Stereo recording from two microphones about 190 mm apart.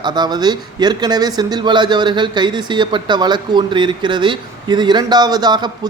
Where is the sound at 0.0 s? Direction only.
25° right (ahead or behind).